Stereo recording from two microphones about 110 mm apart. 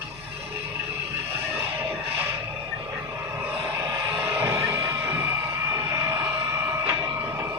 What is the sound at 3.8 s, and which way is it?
Music, 20° right (ahead or behind).